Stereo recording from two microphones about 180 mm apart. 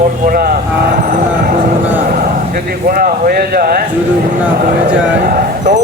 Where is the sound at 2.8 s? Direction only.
55° right (ahead or behind).